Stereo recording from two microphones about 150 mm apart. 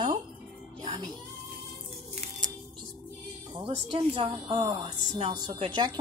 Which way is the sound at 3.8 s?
35° right (ahead or behind).